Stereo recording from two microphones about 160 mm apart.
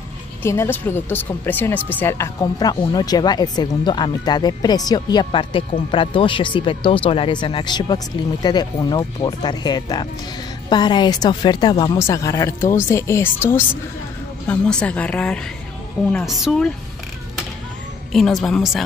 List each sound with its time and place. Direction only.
0.4 s a woman's voice: 15° left (ahead or behind)
18.1 s a woman's voice: centre (ahead or behind)